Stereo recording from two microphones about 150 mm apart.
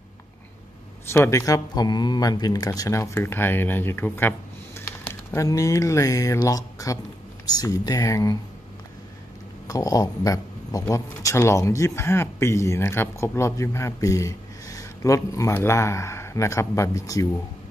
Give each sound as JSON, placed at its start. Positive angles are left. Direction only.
{"t": 1.1, "sound": "speech", "side_deg": 20}
{"t": 9.7, "sound": "speech", "side_deg": 25}